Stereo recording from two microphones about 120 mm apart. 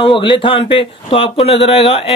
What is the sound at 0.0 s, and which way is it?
Speech, 45° left (ahead or behind).